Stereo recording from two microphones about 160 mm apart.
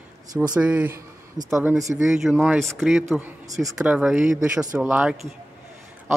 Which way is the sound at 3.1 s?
10° right (ahead or behind).